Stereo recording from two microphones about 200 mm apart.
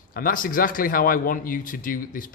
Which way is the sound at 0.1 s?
45° left (ahead or behind).